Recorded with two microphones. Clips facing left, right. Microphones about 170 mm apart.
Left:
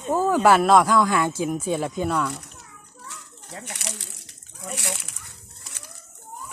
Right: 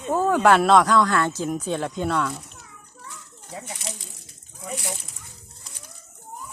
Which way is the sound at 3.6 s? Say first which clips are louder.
Even; 70° left (ahead or behind).